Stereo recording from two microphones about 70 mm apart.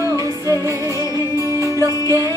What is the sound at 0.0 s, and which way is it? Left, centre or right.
Music, right.